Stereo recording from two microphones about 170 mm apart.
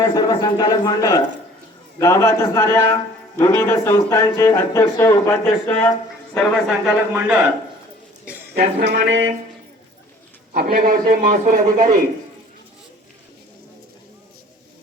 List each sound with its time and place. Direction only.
0.1 s speech: 25° left (ahead or behind)
6.3 s a man's voice: centre (ahead or behind)
8.8 s a sound: 90° right
10.5 s a man's voice: 65° right (ahead or behind)